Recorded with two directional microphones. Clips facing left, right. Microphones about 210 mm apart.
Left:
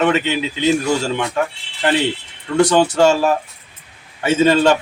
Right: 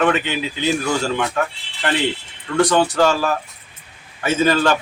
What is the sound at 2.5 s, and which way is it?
A man's voice, 25° left (ahead or behind).